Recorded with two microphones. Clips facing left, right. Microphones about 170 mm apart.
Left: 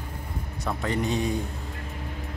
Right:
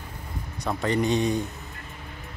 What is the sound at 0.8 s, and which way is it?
Speech, centre (ahead or behind).